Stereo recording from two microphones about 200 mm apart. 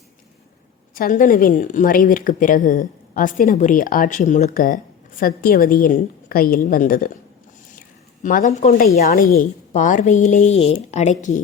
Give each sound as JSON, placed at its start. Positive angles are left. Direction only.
{"t": 0.9, "sound": "a woman's voice", "side_deg": 40}